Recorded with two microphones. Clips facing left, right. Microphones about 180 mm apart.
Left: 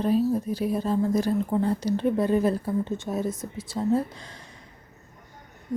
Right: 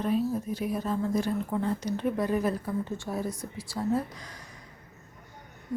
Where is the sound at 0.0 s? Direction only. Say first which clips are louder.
Left 5 dB; 35° left (ahead or behind).